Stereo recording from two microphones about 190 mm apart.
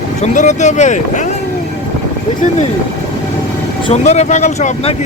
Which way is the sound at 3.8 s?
35° left (ahead or behind).